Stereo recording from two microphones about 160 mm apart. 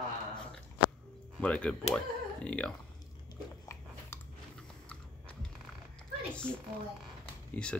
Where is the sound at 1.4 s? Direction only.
10° left (ahead or behind).